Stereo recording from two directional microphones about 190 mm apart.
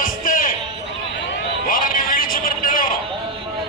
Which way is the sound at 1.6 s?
45° left (ahead or behind).